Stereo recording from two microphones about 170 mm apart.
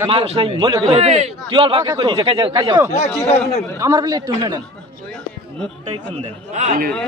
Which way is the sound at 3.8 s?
20° right (ahead or behind).